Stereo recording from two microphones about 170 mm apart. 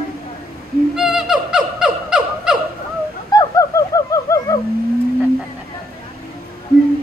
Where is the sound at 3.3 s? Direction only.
20° left (ahead or behind).